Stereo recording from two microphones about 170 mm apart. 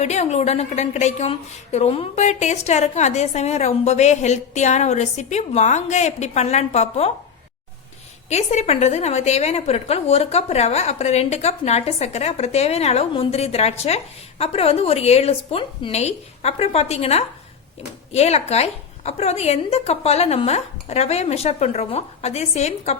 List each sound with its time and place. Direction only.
0.0 s a woman's voice: 40° left (ahead or behind)
8.3 s a woman's voice: 40° left (ahead or behind)